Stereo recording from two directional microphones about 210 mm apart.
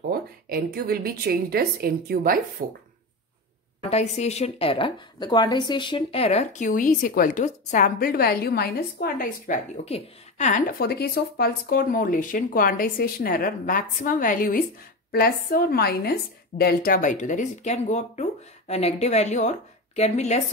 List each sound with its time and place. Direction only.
0.1 s a woman's voice: 45° right (ahead or behind)
3.9 s a woman's voice: 30° left (ahead or behind)
9.8 s a woman's voice: 30° left (ahead or behind)
10.8 s a woman's voice: 50° left (ahead or behind); by 20.4 s 35° left (ahead or behind)